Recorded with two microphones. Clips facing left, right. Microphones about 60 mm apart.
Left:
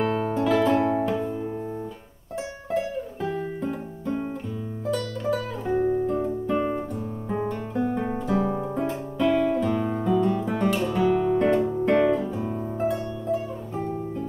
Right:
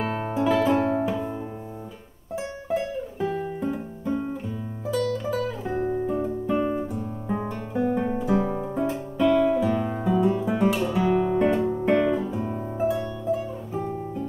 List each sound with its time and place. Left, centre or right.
0.0 s music: centre
2.7 s music: centre
7.7 s guitar: centre
11.8 s music: centre